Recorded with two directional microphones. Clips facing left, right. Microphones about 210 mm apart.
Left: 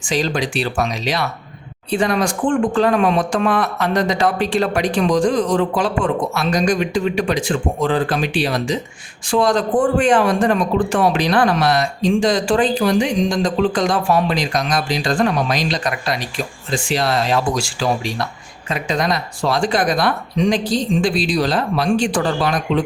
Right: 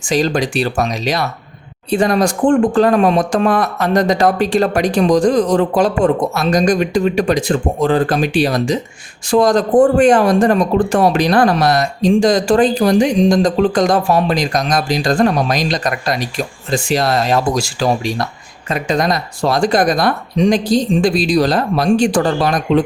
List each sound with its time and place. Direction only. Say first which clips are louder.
0.0 s speech: right 4 dB; 45° right (ahead or behind)